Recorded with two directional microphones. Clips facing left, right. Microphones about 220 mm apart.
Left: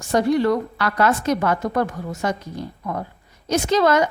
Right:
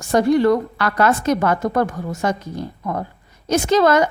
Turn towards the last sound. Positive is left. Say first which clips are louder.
# right 2 dB
turn(degrees=-50)  # may be behind; listen again after turning